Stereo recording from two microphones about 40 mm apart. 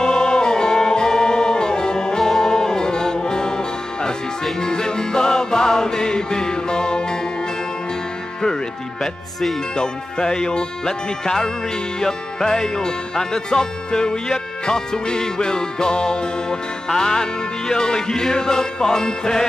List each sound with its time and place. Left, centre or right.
0.0 s music: centre
9.0 s speech: centre
9.8 s music: centre